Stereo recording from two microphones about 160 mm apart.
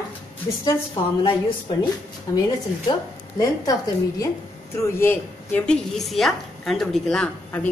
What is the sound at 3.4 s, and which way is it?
A woman's voice, 20° left (ahead or behind).